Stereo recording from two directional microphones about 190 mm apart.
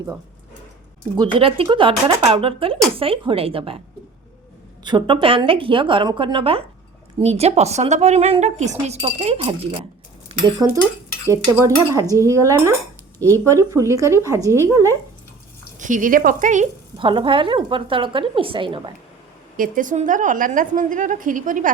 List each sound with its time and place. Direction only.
1.1 s speech: 25° right (ahead or behind)
4.8 s a woman's voice: 25° right (ahead or behind)
12.1 s a woman's voice: 15° right (ahead or behind)
15.8 s a woman's voice: 45° right (ahead or behind)
17.0 s speech: 25° right (ahead or behind)
19.5 s a woman's voice: 45° right (ahead or behind)